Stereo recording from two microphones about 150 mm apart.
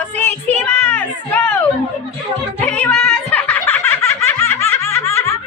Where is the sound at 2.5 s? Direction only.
10° left (ahead or behind).